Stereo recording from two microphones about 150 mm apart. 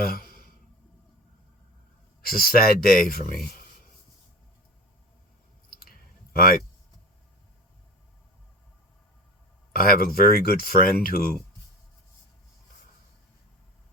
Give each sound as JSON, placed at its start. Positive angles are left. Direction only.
{"t": 0.0, "sound": "a sound", "side_deg": 75}
{"t": 2.2, "sound": "speech", "side_deg": 80}
{"t": 5.7, "sound": "clicking", "side_deg": 80}
{"t": 9.7, "sound": "speech", "side_deg": 75}